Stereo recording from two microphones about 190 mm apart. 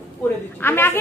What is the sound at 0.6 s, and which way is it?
Speech, 10° left (ahead or behind).